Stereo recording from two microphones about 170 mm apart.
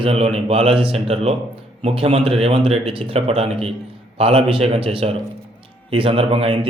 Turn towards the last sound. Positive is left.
turn(degrees=-35)  # may be behind; listen again after turning